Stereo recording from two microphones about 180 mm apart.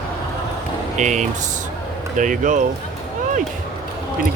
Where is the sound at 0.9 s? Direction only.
40° right (ahead or behind).